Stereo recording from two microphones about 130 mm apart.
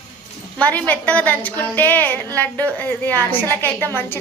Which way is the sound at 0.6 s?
10° left (ahead or behind).